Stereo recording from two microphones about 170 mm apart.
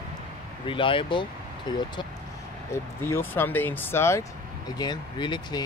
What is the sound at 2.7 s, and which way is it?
Speech, 15° left (ahead or behind).